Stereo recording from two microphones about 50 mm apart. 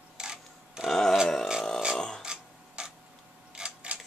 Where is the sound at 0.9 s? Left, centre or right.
Centre.